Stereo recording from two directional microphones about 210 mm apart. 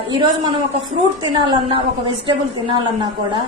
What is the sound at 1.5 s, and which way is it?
A woman's voice, 25° right (ahead or behind).